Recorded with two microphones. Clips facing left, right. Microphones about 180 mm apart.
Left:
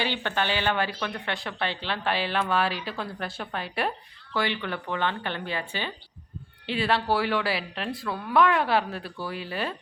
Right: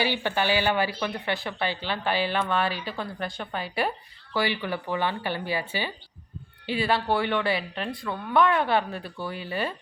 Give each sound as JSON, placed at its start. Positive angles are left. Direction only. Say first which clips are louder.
{"t": 0.0, "sound": "speech", "louder": "right 2 dB", "side_deg": -10}